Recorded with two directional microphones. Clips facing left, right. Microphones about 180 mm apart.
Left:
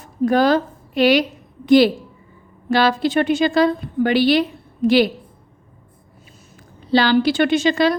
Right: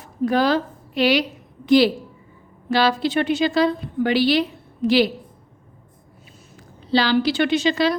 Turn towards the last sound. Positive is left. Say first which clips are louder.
# left 3 dB
turn(degrees=50)  # may be behind; listen again after turning